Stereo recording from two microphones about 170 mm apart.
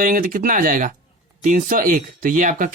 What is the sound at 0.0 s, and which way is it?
Speech, 55° right (ahead or behind).